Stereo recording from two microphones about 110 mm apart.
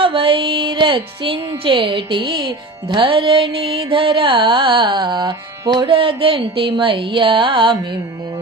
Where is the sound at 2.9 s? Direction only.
50° right (ahead or behind).